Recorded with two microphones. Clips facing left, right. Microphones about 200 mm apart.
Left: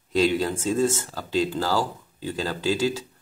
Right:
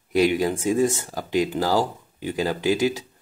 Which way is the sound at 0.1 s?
15° right (ahead or behind).